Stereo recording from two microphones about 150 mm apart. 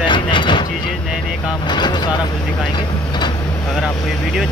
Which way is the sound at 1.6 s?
30° left (ahead or behind).